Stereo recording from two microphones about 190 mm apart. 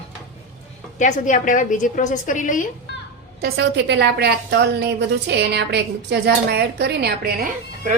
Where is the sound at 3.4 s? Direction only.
55° right (ahead or behind).